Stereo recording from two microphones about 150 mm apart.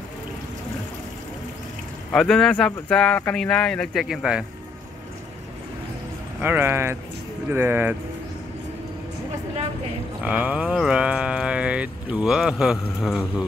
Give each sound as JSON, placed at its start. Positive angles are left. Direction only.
{"t": 2.1, "sound": "speech", "side_deg": 5}
{"t": 6.4, "sound": "speech", "side_deg": -15}
{"t": 10.2, "sound": "speech", "side_deg": -10}